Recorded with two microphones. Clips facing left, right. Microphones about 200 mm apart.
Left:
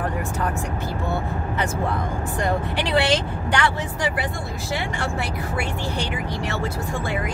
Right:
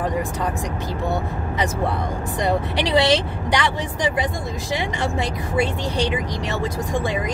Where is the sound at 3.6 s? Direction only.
20° right (ahead or behind).